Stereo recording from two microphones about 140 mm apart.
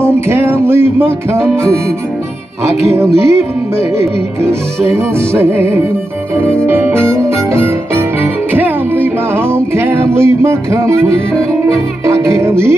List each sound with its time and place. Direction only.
0.0 s music: 20° right (ahead or behind)
2.9 s music: 20° right (ahead or behind)
4.0 s speech: 20° right (ahead or behind)
6.6 s music: 15° right (ahead or behind)
12.1 s music: 20° right (ahead or behind)